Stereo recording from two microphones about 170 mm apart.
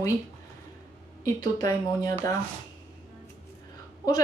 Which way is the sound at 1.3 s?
25° left (ahead or behind).